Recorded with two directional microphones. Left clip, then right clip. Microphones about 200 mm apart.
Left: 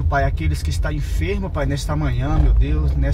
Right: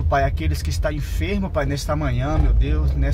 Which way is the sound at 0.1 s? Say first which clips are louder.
Right 1 dB; 30° right (ahead or behind).